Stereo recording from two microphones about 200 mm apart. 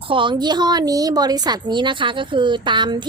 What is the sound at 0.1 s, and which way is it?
A woman's voice, 25° right (ahead or behind).